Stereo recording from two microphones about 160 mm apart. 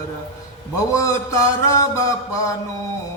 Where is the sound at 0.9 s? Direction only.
20° left (ahead or behind).